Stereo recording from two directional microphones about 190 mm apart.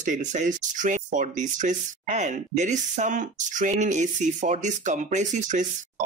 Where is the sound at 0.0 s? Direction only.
40° right (ahead or behind).